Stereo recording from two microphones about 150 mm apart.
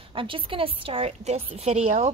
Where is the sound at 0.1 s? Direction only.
35° right (ahead or behind).